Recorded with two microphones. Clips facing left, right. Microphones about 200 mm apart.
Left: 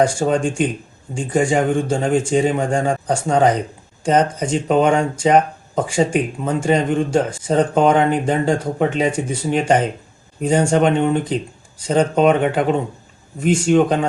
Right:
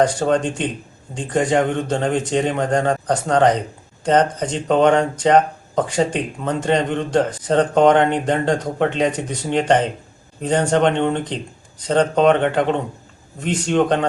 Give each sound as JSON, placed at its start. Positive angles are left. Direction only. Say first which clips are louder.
{"t": 0.0, "sound": "speech", "louder": "even", "side_deg": 10}